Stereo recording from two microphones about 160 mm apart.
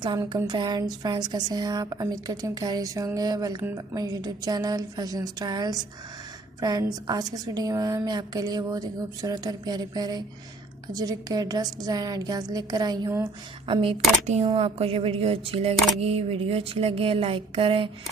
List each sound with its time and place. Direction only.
0.0 s a woman's voice: 30° right (ahead or behind)
13.7 s speech: 35° right (ahead or behind)